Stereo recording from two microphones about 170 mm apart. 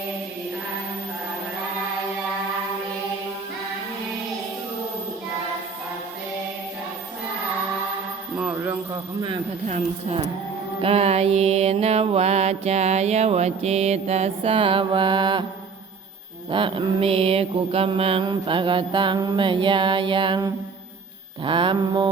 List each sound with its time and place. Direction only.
8.4 s music: 10° right (ahead or behind)
9.6 s a woman's voice: 45° right (ahead or behind)
10.8 s mantra: 35° right (ahead or behind)
16.5 s mantra: 30° right (ahead or behind)